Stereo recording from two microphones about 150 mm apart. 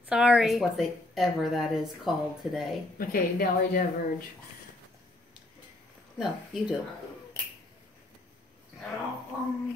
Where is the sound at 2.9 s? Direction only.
75° left (ahead or behind).